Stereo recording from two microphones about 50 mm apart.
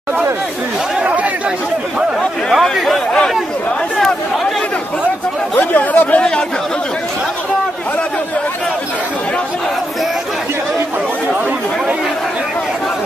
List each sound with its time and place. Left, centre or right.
2.5 s speech: centre
5.6 s speech: left